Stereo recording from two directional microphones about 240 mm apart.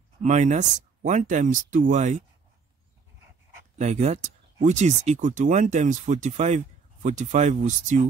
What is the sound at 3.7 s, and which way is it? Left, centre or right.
Speech, right.